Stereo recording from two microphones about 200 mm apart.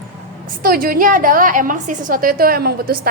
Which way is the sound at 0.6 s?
45° right (ahead or behind).